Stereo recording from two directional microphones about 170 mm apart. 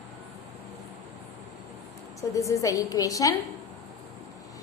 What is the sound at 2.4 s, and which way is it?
Speech, 20° left (ahead or behind).